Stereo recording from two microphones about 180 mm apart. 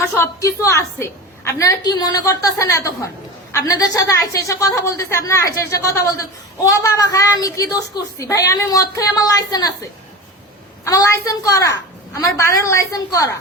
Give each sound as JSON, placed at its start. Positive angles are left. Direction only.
{"t": 0.2, "sound": "a woman's voice", "side_deg": 15}
{"t": 10.8, "sound": "a woman's voice", "side_deg": 15}